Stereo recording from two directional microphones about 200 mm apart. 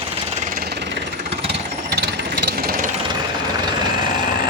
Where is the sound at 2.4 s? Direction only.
45° right (ahead or behind).